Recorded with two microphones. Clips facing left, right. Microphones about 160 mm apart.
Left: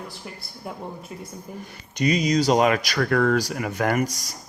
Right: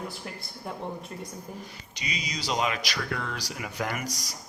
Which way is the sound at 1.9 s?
50° left (ahead or behind).